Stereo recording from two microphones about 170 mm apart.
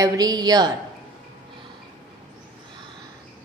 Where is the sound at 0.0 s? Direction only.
20° right (ahead or behind).